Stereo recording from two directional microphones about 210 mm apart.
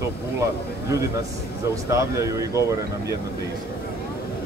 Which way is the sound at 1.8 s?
15° right (ahead or behind).